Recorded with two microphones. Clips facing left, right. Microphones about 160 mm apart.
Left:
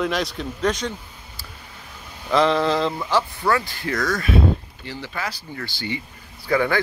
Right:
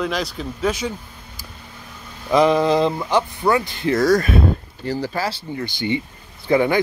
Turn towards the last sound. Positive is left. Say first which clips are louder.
# right 4 dB
turn(degrees=-20)  # may be behind; listen again after turning